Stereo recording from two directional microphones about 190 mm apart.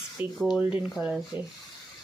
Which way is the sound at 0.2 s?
5° right (ahead or behind).